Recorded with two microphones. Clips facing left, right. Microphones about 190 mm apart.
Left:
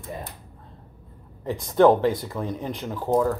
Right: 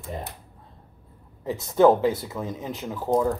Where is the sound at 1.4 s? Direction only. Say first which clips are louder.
Even; 5° right (ahead or behind).